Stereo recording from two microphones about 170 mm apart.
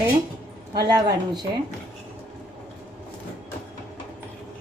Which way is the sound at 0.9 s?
25° right (ahead or behind).